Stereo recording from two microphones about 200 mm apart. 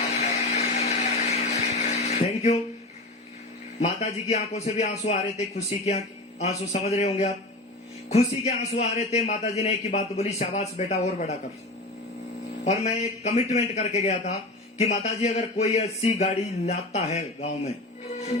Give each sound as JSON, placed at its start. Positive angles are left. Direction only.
{"t": 0.1, "sound": "blender", "side_deg": 35}
{"t": 3.8, "sound": "a man's voice", "side_deg": 35}
{"t": 12.6, "sound": "a man's voice", "side_deg": 35}